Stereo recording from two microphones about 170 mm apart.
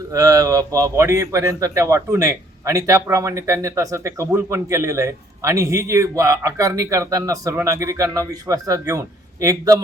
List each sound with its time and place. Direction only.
0.1 s a man's voice: 20° right (ahead or behind)